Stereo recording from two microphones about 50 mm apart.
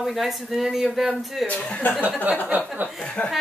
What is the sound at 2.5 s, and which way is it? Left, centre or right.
Speech, right.